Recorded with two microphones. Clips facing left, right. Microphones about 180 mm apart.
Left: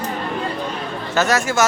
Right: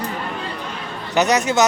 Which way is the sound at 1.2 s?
20° right (ahead or behind).